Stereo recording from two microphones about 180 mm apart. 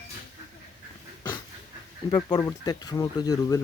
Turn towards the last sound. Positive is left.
turn(degrees=20)  # may be behind; listen again after turning